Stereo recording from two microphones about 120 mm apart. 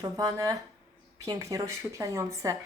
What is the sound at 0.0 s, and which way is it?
A woman's voice, 30° right (ahead or behind).